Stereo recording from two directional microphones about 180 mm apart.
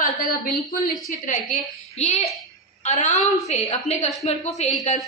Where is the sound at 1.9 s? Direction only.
35° left (ahead or behind).